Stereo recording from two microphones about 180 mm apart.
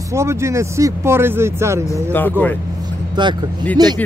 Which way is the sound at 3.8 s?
20° right (ahead or behind).